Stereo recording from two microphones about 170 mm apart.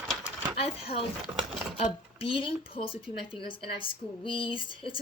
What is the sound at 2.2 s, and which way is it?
A woman's voice, 30° left (ahead or behind).